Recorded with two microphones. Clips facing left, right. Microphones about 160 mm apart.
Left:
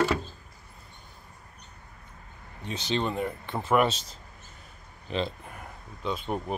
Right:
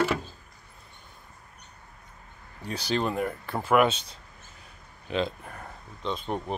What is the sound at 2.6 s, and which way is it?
Speech, 25° left (ahead or behind).